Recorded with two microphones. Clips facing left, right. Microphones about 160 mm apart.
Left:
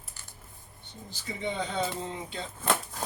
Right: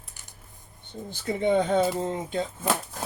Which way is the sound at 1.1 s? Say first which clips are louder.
Right 11 dB; 55° right (ahead or behind).